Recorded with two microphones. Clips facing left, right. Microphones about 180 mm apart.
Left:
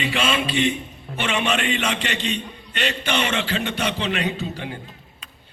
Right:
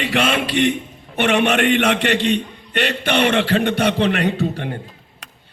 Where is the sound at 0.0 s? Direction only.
65° right (ahead or behind).